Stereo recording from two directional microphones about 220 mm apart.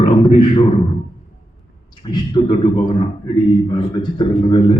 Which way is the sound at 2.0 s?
20° left (ahead or behind).